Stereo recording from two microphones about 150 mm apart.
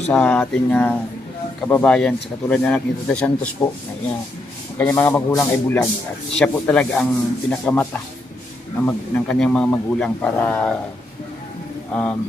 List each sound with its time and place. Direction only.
0.1 s speech: 10° left (ahead or behind)
11.9 s speech: 10° left (ahead or behind)